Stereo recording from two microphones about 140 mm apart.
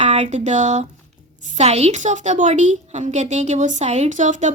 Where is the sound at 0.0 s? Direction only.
55° right (ahead or behind).